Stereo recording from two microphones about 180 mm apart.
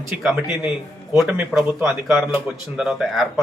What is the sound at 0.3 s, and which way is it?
A man's voice, 5° right (ahead or behind).